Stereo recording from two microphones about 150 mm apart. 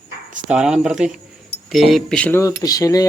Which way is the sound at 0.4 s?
5° right (ahead or behind).